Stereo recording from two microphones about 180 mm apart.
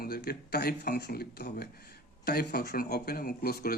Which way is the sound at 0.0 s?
60° left (ahead or behind).